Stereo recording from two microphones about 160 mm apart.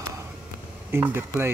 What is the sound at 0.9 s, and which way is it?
Speech, 15° right (ahead or behind).